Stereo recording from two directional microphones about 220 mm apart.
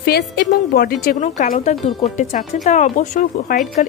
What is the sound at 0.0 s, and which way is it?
A woman's voice, 45° left (ahead or behind).